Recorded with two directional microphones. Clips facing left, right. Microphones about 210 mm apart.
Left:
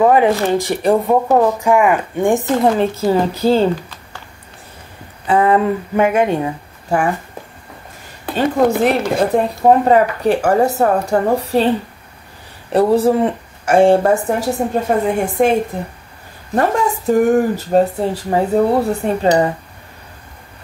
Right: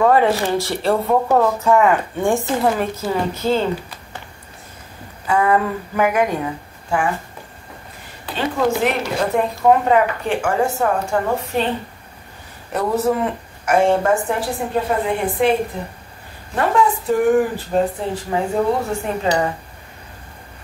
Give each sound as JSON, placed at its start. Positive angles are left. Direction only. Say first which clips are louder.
{"t": 0.0, "sound": "speech", "louder": "left 3 dB", "side_deg": 15}
{"t": 5.2, "sound": "speech", "louder": "left 4 dB", "side_deg": 30}
{"t": 8.8, "sound": "speech", "louder": "left 5 dB", "side_deg": 35}
{"t": 12.7, "sound": "speech", "louder": "left 6 dB", "side_deg": 30}
{"t": 16.5, "sound": "speech", "louder": "left 1 dB", "side_deg": 40}